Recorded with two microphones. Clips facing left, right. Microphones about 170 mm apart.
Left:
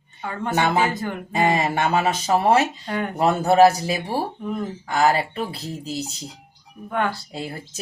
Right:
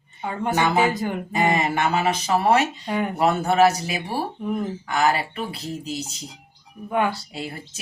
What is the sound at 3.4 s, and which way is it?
Speech, 30° left (ahead or behind).